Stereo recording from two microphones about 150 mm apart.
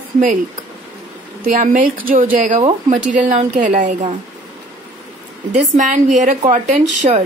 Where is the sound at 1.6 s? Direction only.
65° right (ahead or behind).